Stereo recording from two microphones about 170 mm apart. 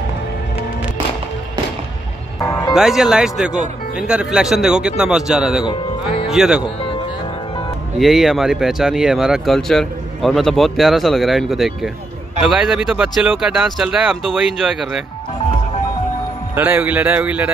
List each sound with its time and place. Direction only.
2.4 s music: 15° left (ahead or behind)
2.7 s speech: 5° right (ahead or behind)
5.7 s music: 35° left (ahead or behind)
6.3 s speech: centre (ahead or behind)
8.0 s speech: centre (ahead or behind)
16.5 s a man's voice: 10° right (ahead or behind)